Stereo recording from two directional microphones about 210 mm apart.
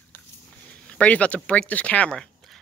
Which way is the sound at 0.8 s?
5° left (ahead or behind).